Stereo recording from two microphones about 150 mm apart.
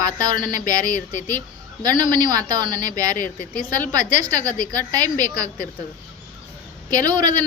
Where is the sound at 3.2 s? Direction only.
65° left (ahead or behind).